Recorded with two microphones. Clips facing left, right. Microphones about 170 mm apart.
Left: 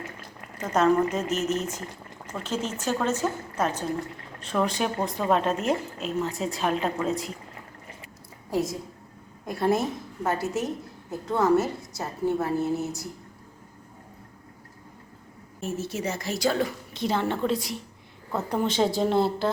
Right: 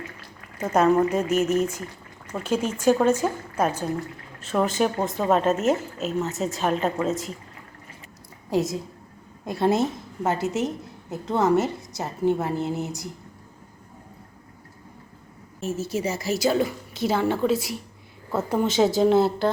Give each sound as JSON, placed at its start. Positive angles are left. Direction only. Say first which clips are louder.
{"t": 0.6, "sound": "a woman's voice", "louder": "right 2 dB", "side_deg": -10}
{"t": 8.4, "sound": "a woman's voice", "louder": "right 3 dB", "side_deg": -20}
{"t": 15.6, "sound": "a woman's voice", "louder": "right 3 dB", "side_deg": 0}